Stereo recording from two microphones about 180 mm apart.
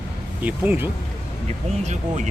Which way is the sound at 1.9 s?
40° right (ahead or behind).